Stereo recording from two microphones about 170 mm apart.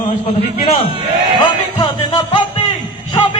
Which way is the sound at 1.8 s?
30° left (ahead or behind).